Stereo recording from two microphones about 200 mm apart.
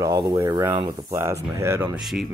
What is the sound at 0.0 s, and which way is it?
Speech, 20° right (ahead or behind).